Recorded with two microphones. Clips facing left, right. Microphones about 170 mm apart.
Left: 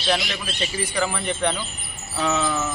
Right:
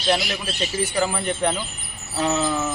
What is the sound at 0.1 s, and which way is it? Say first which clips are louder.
A man's voice: right 2 dB; 5° right (ahead or behind).